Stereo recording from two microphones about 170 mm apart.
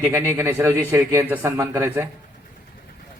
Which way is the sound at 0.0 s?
15° right (ahead or behind).